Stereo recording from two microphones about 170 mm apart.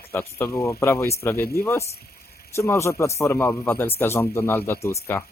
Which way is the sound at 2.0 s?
65° left (ahead or behind).